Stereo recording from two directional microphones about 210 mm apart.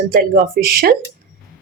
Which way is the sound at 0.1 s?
45° right (ahead or behind).